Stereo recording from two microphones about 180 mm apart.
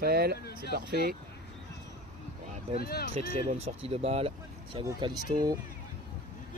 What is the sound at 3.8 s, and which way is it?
Speech, 30° right (ahead or behind).